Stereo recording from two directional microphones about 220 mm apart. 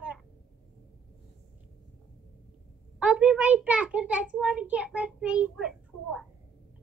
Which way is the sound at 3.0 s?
5° right (ahead or behind).